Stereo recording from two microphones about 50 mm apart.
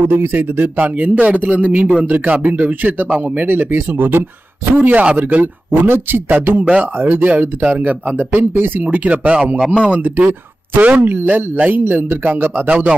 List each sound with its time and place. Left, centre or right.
0.1 s speech: right
3.3 s speech: right
6.6 s speech: right
9.1 s speech: right
12.6 s speech: right